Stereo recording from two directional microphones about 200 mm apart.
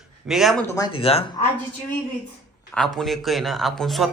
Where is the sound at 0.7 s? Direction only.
20° left (ahead or behind).